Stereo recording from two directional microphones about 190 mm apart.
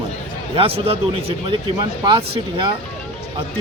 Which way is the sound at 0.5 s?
30° right (ahead or behind).